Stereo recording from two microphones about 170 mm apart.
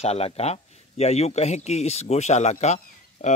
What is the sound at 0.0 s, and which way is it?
Speech, 40° left (ahead or behind).